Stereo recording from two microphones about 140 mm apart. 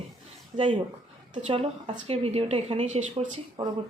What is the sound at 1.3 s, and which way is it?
A woman's voice, 40° right (ahead or behind).